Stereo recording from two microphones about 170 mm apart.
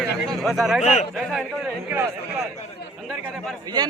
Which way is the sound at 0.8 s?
45° left (ahead or behind).